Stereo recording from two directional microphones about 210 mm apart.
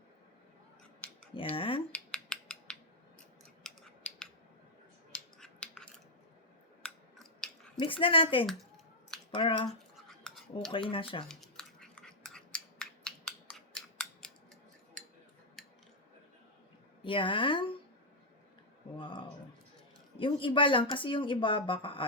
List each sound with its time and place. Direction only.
1.3 s speech: 25° left (ahead or behind)
1.9 s a sound: 5° left (ahead or behind)
3.6 s scissors: 5° left (ahead or behind)
5.4 s a sound: 5° left (ahead or behind)
6.8 s scissors: 5° left (ahead or behind)
7.8 s speech: 25° left (ahead or behind)
9.6 s cutlery: centre (ahead or behind)
10.7 s speech: 25° left (ahead or behind)
11.3 s scissors: centre (ahead or behind)
15.6 s a sound: centre (ahead or behind)
17.0 s speech: 25° left (ahead or behind)
18.9 s a sound: 25° left (ahead or behind)
20.1 s speech: 25° left (ahead or behind)